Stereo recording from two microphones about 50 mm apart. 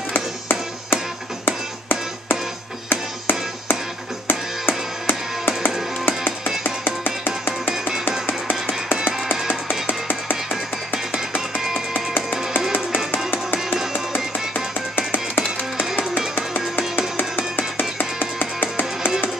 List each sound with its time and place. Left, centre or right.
0.1 s music: left
11.5 s music: centre
11.9 s music: left
13.7 s music: centre
14.1 s music: left